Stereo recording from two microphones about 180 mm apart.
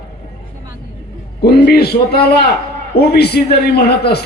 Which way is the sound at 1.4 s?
60° left (ahead or behind).